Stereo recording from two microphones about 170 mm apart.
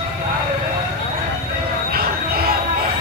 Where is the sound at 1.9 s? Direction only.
65° right (ahead or behind).